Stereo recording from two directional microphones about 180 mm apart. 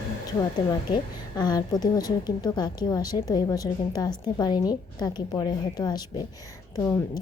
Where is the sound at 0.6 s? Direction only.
25° left (ahead or behind).